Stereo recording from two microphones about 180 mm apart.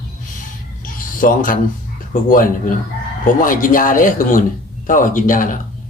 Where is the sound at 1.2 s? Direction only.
50° left (ahead or behind).